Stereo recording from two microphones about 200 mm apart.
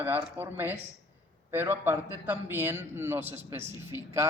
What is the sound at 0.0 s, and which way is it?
A man's voice, 10° right (ahead or behind).